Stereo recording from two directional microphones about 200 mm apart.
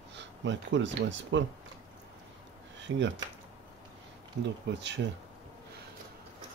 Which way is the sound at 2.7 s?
65° right (ahead or behind).